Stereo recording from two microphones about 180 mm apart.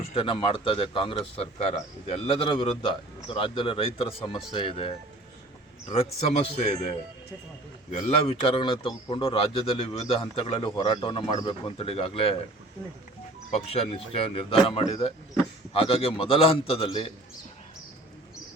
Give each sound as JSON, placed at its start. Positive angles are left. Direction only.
{"t": 0.1, "sound": "speech", "side_deg": 30}
{"t": 13.5, "sound": "speech", "side_deg": 35}